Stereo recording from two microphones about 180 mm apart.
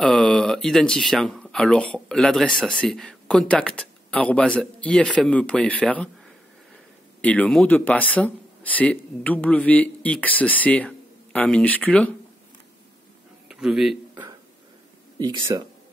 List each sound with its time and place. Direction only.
0.0 s speech: 5° left (ahead or behind)
7.2 s speech: 10° left (ahead or behind)
13.5 s a man's voice: centre (ahead or behind)
15.1 s speech: 20° right (ahead or behind)